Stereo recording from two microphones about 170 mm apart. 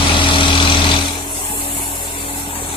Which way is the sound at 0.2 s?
30° left (ahead or behind).